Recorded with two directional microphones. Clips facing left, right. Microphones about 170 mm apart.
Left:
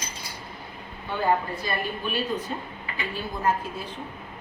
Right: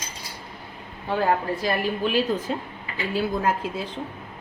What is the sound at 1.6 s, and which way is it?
A woman's voice, 90° right.